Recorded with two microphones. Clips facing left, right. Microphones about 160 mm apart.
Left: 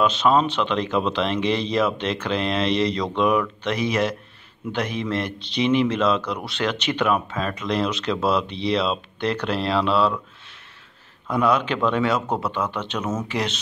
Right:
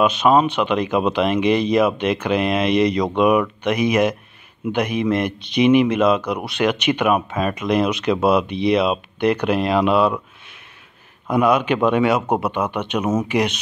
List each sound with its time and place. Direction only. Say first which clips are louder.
0.0 s speech: right 3 dB; 10° right (ahead or behind)
11.2 s speech: right 4 dB; 15° right (ahead or behind)